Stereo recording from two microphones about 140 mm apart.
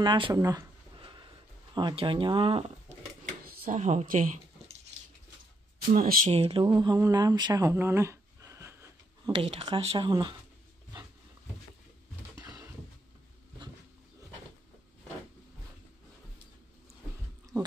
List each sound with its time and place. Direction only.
0.0 s speech: 30° right (ahead or behind)
0.9 s a sound: 35° right (ahead or behind)
3.4 s speech: 75° right (ahead or behind)
5.9 s speech: 85° right
6.2 s speech: 45° right (ahead or behind)
6.6 s speech: 30° right (ahead or behind)
9.3 s speech: 45° right (ahead or behind)
9.9 s speech: 35° right (ahead or behind)